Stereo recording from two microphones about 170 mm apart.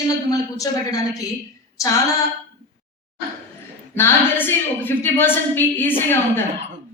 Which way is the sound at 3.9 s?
15° left (ahead or behind).